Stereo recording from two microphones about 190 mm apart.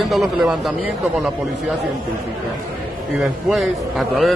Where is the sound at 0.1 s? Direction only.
Centre (ahead or behind).